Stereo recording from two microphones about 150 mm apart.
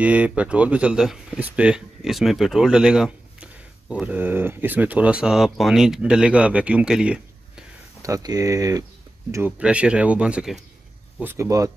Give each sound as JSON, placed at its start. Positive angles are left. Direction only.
{"t": 0.0, "sound": "speech", "side_deg": -10}
{"t": 8.0, "sound": "speech", "side_deg": -25}
{"t": 9.6, "sound": "speech", "side_deg": -5}
{"t": 11.1, "sound": "speech", "side_deg": -15}